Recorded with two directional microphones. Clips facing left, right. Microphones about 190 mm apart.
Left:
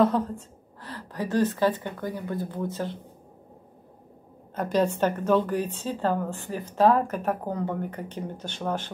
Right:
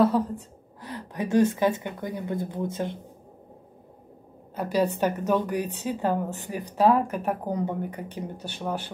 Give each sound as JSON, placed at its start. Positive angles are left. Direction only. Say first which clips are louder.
{"t": 0.0, "sound": "a woman's voice", "louder": "right 1 dB", "side_deg": -10}
{"t": 4.6, "sound": "a woman's voice", "louder": "left 1 dB", "side_deg": -10}